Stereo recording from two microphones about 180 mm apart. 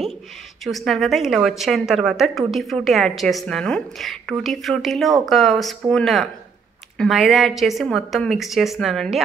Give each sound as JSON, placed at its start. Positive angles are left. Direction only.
{"t": 0.7, "sound": "a woman's voice", "side_deg": 0}